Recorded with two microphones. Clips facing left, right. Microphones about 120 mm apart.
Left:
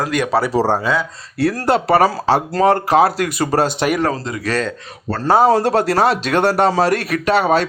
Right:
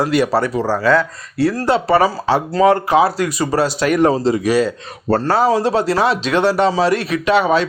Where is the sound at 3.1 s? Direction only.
55° left (ahead or behind).